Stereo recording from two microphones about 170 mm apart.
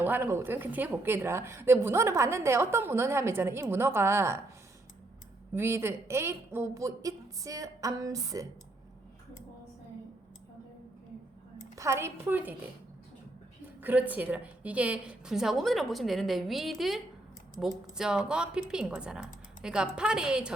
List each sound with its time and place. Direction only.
0.0 s speech: 10° right (ahead or behind)
5.5 s a woman's voice: 15° right (ahead or behind)
11.8 s speech: 15° right (ahead or behind)
13.8 s a woman's voice: 10° right (ahead or behind)